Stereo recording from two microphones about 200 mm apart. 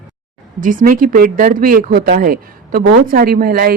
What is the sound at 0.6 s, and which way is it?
Speech, 40° right (ahead or behind).